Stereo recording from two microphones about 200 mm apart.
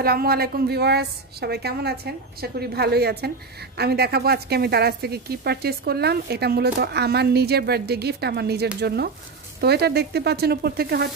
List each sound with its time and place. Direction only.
0.0 s speech: 50° right (ahead or behind)